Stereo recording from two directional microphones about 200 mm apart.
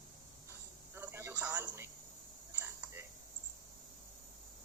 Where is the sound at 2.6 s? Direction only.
15° right (ahead or behind).